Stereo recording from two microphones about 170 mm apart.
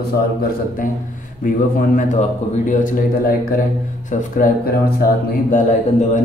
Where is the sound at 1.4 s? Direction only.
50° left (ahead or behind).